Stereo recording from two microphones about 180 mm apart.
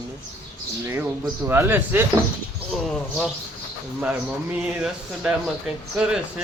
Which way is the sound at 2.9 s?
Centre (ahead or behind).